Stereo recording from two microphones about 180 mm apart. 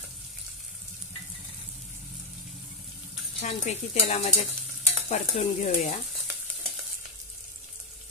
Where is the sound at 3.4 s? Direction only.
40° left (ahead or behind).